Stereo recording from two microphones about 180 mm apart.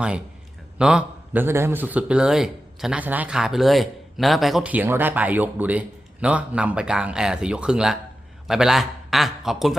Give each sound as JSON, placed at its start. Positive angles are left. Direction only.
{"t": 0.8, "sound": "a man's voice", "side_deg": -5}